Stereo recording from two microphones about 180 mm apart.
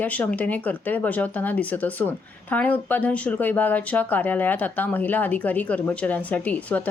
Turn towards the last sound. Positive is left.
turn(degrees=10)  # may be behind; listen again after turning